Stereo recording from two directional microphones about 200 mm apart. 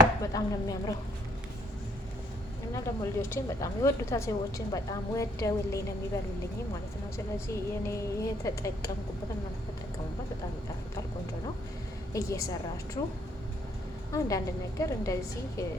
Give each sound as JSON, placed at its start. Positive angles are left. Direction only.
{"t": 0.3, "sound": "a woman's voice", "side_deg": 15}
{"t": 2.7, "sound": "a woman's voice", "side_deg": 15}
{"t": 7.3, "sound": "a woman's voice", "side_deg": 15}
{"t": 12.1, "sound": "a woman's voice", "side_deg": 15}
{"t": 14.1, "sound": "a woman's voice", "side_deg": 15}